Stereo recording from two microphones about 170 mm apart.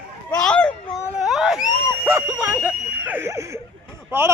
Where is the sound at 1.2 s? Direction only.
Centre (ahead or behind).